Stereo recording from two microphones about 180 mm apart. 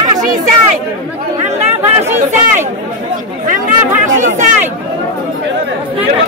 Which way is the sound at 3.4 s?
45° right (ahead or behind).